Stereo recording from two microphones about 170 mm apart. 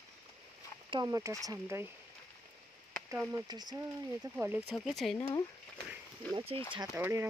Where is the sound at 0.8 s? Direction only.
25° right (ahead or behind).